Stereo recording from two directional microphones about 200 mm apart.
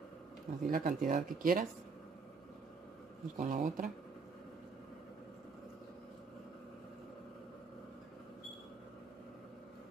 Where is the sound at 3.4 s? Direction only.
40° right (ahead or behind).